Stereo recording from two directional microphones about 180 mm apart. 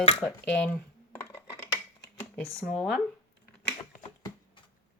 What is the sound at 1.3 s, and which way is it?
Scissors, 15° left (ahead or behind).